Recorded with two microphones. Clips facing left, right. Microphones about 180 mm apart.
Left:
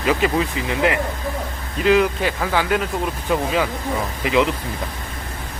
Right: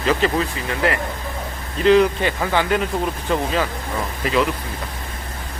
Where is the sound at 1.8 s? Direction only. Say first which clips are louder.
Right 2 dB; 5° left (ahead or behind).